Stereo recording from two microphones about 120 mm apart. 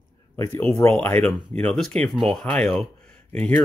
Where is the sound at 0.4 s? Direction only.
20° left (ahead or behind).